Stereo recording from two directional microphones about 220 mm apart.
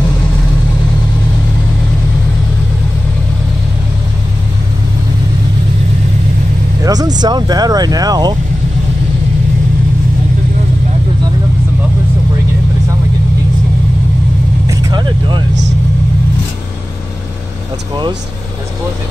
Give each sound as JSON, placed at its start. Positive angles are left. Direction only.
{"t": 6.8, "sound": "vehicle", "side_deg": -15}
{"t": 7.2, "sound": "speech", "side_deg": -20}
{"t": 14.7, "sound": "speech", "side_deg": -15}